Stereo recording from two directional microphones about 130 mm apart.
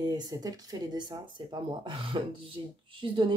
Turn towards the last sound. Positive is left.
turn(degrees=-40)  # may be behind; listen again after turning